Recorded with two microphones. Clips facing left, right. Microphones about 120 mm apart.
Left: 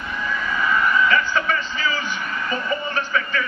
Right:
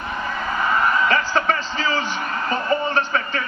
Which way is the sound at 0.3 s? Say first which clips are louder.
Even; 40° right (ahead or behind).